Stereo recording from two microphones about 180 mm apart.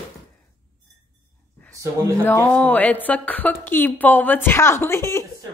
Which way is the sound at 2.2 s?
10° left (ahead or behind).